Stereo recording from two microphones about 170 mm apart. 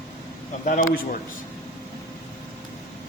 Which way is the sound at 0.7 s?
55° left (ahead or behind).